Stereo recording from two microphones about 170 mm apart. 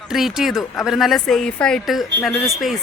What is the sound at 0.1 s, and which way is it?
Speech, centre (ahead or behind).